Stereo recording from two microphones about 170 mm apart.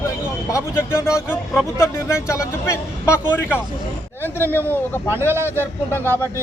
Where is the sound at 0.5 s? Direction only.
15° left (ahead or behind).